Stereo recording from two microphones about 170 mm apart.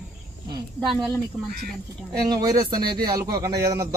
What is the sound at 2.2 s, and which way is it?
Speech, 20° right (ahead or behind).